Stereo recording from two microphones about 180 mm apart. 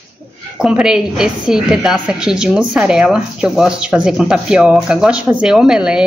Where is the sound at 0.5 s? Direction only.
5° right (ahead or behind).